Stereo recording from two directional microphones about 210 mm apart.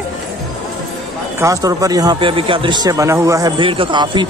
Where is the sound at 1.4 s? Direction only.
15° right (ahead or behind).